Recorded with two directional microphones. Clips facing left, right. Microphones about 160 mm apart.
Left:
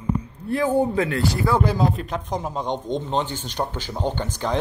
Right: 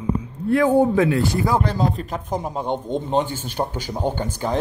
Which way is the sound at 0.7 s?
15° right (ahead or behind).